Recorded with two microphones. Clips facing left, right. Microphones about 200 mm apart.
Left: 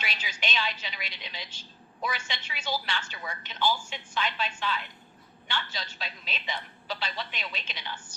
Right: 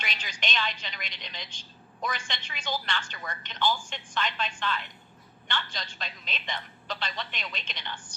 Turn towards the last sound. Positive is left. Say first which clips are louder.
# even
turn(degrees=5)  # may be behind; listen again after turning